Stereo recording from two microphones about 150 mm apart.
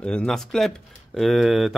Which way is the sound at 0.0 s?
5° left (ahead or behind).